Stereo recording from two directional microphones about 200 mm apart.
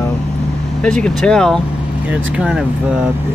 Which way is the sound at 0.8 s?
5° left (ahead or behind).